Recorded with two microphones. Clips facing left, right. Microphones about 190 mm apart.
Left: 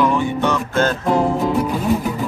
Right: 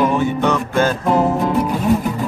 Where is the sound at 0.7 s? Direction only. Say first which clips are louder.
Even; 5° right (ahead or behind).